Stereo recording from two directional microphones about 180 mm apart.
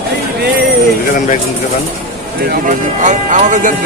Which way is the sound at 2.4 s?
45° right (ahead or behind).